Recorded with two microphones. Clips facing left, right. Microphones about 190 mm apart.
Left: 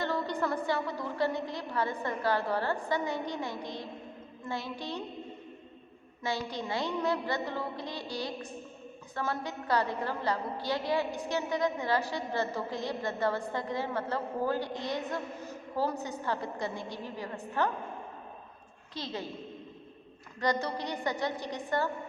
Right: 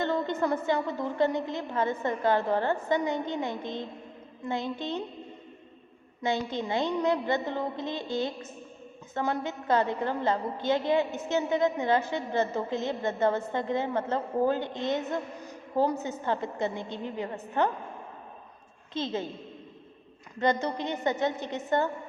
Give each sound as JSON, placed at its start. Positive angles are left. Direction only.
{"t": 0.0, "sound": "a woman's voice", "side_deg": -20}
{"t": 6.2, "sound": "a woman's voice", "side_deg": -20}
{"t": 18.9, "sound": "a woman's voice", "side_deg": -25}
{"t": 20.4, "sound": "a woman's voice", "side_deg": -20}